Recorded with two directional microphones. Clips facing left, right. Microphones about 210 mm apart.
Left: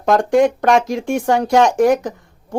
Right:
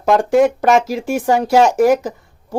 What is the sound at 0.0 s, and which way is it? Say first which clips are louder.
Speech: right 1 dB; 5° right (ahead or behind).